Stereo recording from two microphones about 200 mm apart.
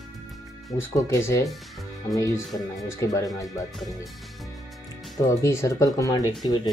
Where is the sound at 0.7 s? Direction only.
15° left (ahead or behind).